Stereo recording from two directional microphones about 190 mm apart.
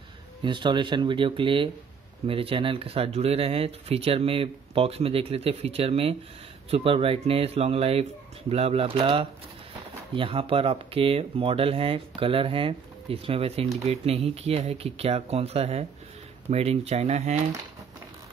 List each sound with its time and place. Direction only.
0.4 s speech: 25° right (ahead or behind)